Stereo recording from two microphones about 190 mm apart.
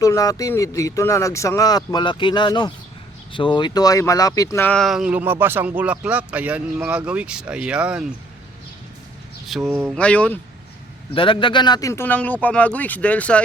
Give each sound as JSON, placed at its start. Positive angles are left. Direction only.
{"t": 0.0, "sound": "speech", "side_deg": 15}
{"t": 9.6, "sound": "speech", "side_deg": -10}
{"t": 9.9, "sound": "speech", "side_deg": 5}
{"t": 11.1, "sound": "speech", "side_deg": 25}